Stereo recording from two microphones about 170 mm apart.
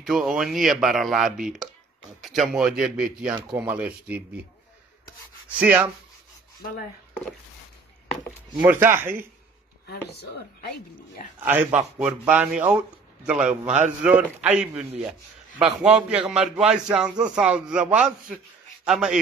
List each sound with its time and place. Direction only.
0.0 s a man's voice: 5° right (ahead or behind)
5.6 s a man's voice: 10° right (ahead or behind)
8.5 s a man's voice: 15° right (ahead or behind)
10.6 s speech: 65° left (ahead or behind)
11.4 s a man's voice: 10° right (ahead or behind)